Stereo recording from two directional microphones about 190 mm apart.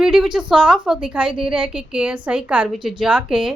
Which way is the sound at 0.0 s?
5° right (ahead or behind).